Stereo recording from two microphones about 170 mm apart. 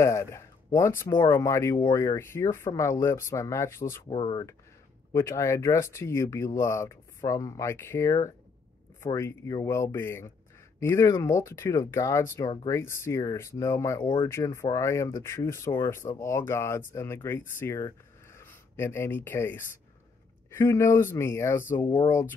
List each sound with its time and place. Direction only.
0.0 s speech: 15° left (ahead or behind)
4.1 s speech: 30° left (ahead or behind)
5.1 s speech: 15° left (ahead or behind)
21.8 s speech: 30° left (ahead or behind)